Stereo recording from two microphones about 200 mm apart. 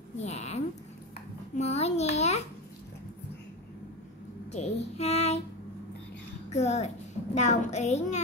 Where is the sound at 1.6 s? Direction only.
35° left (ahead or behind).